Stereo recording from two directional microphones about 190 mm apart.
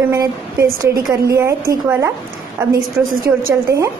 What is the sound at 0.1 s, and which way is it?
A woman's voice, 20° right (ahead or behind).